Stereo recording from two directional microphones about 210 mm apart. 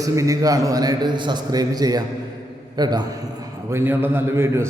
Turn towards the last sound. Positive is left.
turn(degrees=-10)  # may be behind; listen again after turning